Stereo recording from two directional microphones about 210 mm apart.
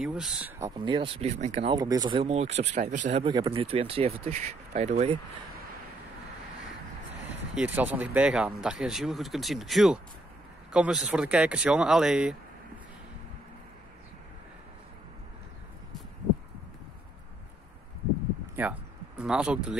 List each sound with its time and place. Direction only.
0.0 s speech: 5° right (ahead or behind)
0.6 s speech: 20° right (ahead or behind)
7.5 s speech: 10° right (ahead or behind)
18.6 s speech: 5° right (ahead or behind)